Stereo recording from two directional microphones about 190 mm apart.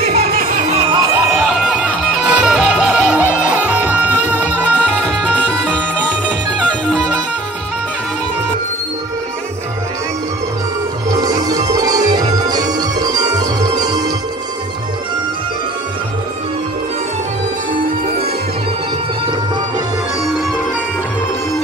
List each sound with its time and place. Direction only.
0.1 s music: 50° right (ahead or behind)
0.7 s music: 30° right (ahead or behind)
1.4 s music: 5° right (ahead or behind)
5.4 s music: 5° left (ahead or behind)
11.1 s music: 20° right (ahead or behind)